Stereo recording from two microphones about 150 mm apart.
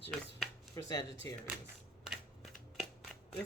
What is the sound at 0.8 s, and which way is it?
Speech, 25° left (ahead or behind).